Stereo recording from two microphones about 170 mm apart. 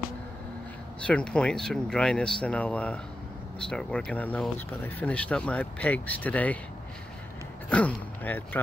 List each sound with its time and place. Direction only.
1.0 s speech: 5° left (ahead or behind)
7.7 s speech: 10° left (ahead or behind)